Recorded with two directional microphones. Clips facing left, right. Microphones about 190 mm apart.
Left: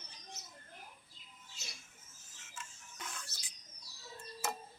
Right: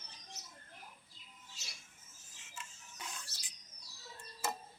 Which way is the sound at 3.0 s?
15° right (ahead or behind).